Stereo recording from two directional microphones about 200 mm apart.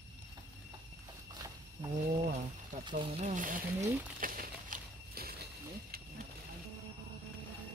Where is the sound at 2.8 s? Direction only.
30° right (ahead or behind); by 5.4 s 50° right (ahead or behind).